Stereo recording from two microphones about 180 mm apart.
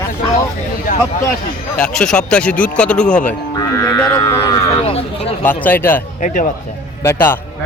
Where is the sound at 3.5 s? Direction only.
15° left (ahead or behind).